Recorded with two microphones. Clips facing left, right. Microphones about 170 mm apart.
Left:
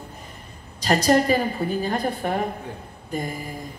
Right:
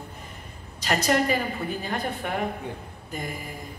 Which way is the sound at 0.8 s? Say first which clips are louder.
Left 5 dB; 35° left (ahead or behind).